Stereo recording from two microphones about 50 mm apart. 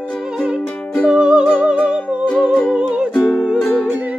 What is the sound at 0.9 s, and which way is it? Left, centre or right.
Music, centre.